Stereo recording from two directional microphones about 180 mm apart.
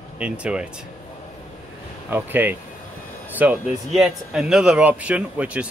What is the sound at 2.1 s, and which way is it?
Speech, 10° right (ahead or behind).